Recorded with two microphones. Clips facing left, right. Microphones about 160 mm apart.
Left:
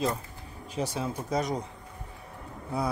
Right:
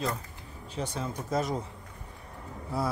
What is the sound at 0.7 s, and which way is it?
Speech, 10° left (ahead or behind).